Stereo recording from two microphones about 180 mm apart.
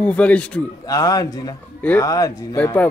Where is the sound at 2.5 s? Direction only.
10° left (ahead or behind).